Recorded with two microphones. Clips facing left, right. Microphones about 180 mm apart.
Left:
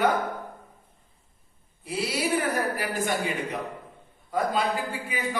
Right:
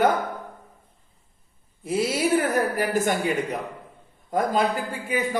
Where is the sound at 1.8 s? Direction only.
45° right (ahead or behind).